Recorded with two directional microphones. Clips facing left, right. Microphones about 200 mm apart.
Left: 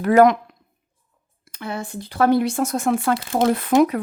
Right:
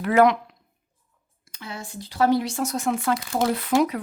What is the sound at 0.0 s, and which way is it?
Speech, 45° left (ahead or behind).